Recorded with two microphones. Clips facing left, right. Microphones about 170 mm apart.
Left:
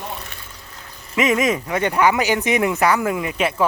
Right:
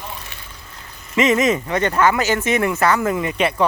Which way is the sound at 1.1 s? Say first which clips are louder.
Right 2 dB; 5° left (ahead or behind).